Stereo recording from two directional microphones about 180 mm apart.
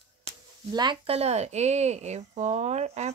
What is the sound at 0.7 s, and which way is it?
Speech, 30° right (ahead or behind).